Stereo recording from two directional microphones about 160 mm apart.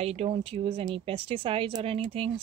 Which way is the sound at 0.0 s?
40° right (ahead or behind).